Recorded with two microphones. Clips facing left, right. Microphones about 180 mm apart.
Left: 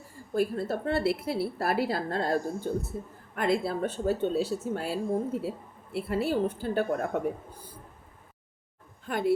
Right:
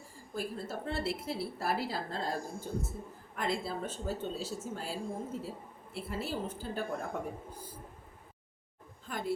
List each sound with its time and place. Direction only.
0.3 s speech: 60° left (ahead or behind)
9.0 s a woman's voice: 70° left (ahead or behind)